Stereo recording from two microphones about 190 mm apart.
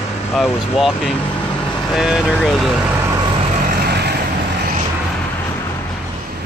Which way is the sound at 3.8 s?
60° right (ahead or behind).